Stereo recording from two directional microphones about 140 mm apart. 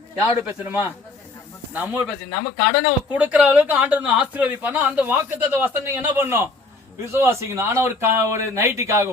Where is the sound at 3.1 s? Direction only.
10° right (ahead or behind).